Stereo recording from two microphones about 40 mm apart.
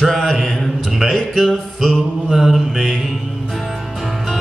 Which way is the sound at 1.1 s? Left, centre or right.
Centre.